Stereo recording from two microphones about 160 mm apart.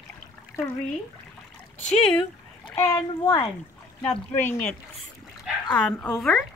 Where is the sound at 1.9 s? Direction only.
5° left (ahead or behind).